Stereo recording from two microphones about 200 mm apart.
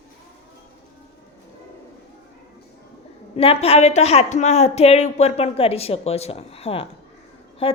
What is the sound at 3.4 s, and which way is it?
A woman's voice, 30° left (ahead or behind).